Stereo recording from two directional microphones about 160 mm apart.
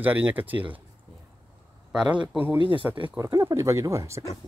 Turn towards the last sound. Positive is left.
turn(degrees=-20)  # may be behind; listen again after turning